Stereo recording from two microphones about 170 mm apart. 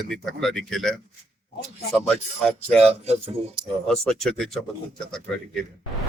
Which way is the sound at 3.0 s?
40° right (ahead or behind).